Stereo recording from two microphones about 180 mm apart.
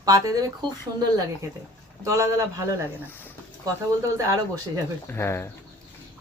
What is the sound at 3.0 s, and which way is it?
Speech, 10° left (ahead or behind).